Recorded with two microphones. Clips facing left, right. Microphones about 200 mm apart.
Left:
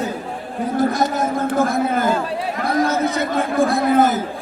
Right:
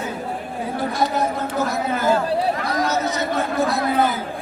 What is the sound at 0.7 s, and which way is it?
Speech, 45° left (ahead or behind).